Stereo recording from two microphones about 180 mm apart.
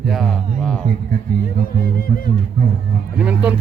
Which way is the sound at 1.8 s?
55° left (ahead or behind).